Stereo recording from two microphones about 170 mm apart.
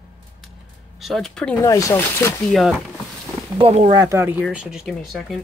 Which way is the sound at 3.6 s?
35° right (ahead or behind).